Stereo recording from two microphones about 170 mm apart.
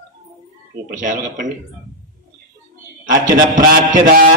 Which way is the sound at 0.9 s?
50° right (ahead or behind).